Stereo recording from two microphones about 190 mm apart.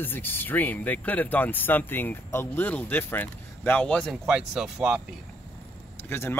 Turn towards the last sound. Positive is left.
turn(degrees=10)  # may be behind; listen again after turning